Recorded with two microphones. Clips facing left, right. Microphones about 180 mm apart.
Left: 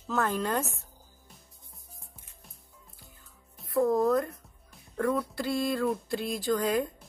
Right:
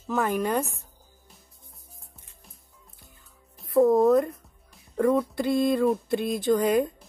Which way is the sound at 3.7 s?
25° right (ahead or behind).